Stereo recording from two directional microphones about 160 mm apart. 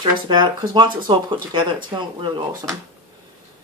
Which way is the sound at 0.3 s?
30° right (ahead or behind).